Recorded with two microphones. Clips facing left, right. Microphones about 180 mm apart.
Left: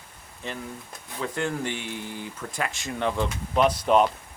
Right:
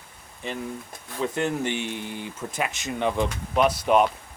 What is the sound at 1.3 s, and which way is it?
Speech, 20° right (ahead or behind).